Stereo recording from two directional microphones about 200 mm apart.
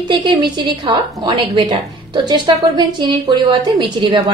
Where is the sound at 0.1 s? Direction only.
25° right (ahead or behind).